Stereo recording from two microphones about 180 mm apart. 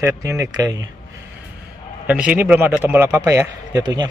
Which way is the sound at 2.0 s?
5° right (ahead or behind).